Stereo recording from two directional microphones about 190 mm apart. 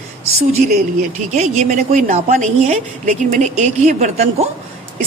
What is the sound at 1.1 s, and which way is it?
A woman's voice, 35° right (ahead or behind).